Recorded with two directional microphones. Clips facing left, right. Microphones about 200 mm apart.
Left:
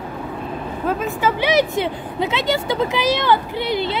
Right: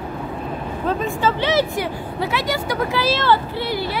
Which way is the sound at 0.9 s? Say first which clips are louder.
Even; 5° left (ahead or behind).